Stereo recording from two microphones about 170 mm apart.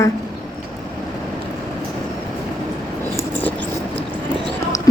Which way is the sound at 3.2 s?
10° left (ahead or behind).